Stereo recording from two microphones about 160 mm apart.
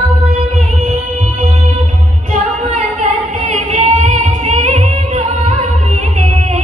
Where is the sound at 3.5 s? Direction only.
45° right (ahead or behind).